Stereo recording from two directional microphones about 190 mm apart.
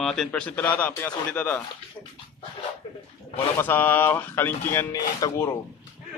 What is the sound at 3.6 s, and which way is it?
A man's voice, 10° left (ahead or behind).